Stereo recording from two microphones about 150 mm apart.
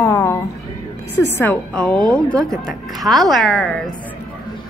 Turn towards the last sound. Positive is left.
turn(degrees=5)  # may be behind; listen again after turning